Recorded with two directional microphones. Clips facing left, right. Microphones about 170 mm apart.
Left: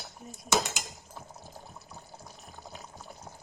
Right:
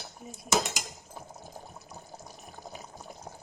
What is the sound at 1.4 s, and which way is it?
Water, 20° right (ahead or behind).